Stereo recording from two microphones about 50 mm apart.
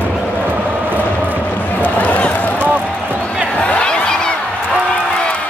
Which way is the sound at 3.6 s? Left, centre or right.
Left.